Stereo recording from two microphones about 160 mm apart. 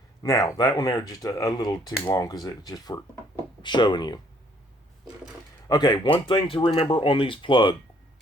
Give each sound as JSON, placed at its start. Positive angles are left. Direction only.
{"t": 0.2, "sound": "speech", "side_deg": 20}
{"t": 5.6, "sound": "speech", "side_deg": 25}